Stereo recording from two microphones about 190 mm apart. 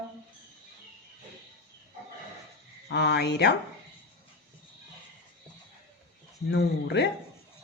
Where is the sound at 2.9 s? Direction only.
65° left (ahead or behind).